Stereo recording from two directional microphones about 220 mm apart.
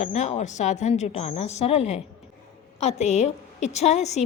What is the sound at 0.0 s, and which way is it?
A woman's voice, 30° left (ahead or behind).